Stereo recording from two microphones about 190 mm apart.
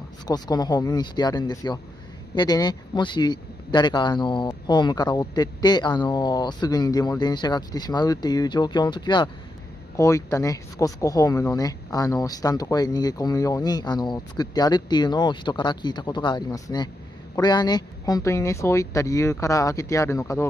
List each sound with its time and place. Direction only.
0.3 s speech: 20° left (ahead or behind)